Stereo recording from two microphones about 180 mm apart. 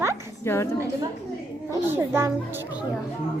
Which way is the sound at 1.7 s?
15° right (ahead or behind).